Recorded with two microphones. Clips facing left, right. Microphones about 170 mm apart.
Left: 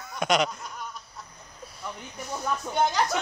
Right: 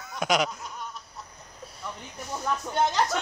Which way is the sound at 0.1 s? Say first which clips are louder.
Left 1 dB; 5° right (ahead or behind).